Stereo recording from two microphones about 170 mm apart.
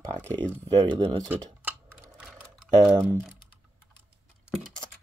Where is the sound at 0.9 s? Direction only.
25° right (ahead or behind).